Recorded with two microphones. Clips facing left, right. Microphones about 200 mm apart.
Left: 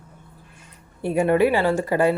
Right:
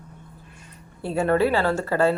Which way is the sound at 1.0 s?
15° left (ahead or behind).